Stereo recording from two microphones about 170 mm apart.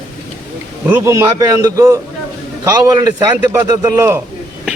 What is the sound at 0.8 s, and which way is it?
A man's voice, 15° right (ahead or behind).